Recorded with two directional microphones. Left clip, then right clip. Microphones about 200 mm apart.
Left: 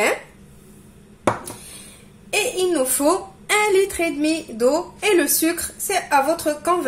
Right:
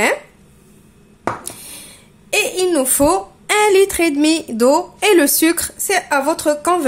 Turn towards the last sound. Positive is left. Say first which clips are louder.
# right 4 dB
turn(degrees=-45)  # may be behind; listen again after turning